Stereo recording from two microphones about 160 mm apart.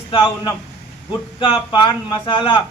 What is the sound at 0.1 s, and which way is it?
A man's voice, 30° left (ahead or behind).